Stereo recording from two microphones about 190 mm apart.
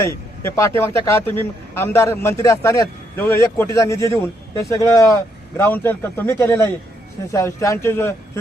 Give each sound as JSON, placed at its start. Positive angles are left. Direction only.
{"t": 0.0, "sound": "a man's voice", "side_deg": 15}